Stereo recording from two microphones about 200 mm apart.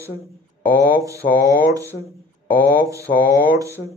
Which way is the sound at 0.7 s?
15° right (ahead or behind).